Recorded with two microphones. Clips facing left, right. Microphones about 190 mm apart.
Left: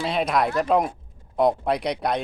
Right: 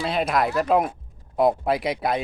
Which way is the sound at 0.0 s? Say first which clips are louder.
Even; centre (ahead or behind).